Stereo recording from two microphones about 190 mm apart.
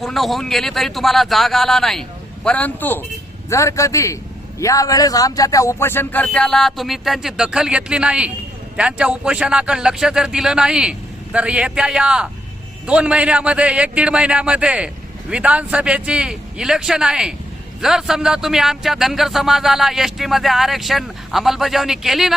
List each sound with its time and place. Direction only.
0.0 s a man's voice: centre (ahead or behind)